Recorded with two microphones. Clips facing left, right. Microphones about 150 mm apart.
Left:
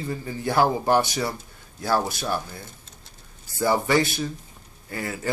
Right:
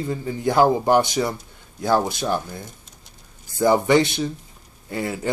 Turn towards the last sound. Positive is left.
turn(degrees=-20)  # may be behind; listen again after turning